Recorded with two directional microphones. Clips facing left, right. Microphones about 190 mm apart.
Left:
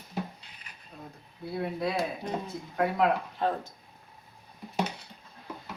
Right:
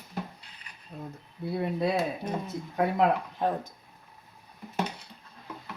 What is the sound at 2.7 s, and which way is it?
Speech, 20° right (ahead or behind).